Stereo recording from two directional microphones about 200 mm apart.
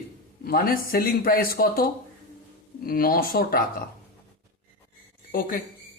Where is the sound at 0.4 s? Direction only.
45° left (ahead or behind).